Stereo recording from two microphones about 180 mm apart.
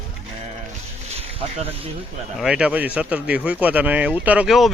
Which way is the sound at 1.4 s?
30° right (ahead or behind).